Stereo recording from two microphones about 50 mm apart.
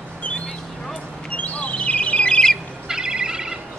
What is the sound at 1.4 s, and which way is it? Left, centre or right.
Bird, left.